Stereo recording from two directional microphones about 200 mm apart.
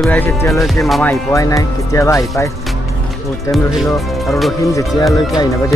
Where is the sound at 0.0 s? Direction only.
10° left (ahead or behind).